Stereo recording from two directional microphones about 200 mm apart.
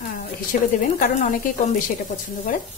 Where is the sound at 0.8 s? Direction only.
40° left (ahead or behind).